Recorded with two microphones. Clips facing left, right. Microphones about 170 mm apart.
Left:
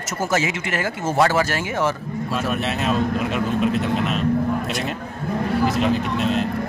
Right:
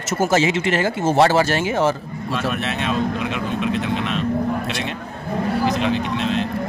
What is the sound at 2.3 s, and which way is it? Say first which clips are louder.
Speech: right 1 dB; centre (ahead or behind).